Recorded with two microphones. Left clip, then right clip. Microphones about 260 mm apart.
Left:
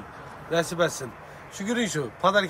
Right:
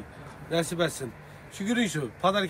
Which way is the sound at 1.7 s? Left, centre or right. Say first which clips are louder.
Left 2 dB; centre.